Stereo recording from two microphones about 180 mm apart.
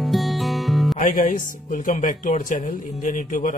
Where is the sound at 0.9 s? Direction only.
45° left (ahead or behind).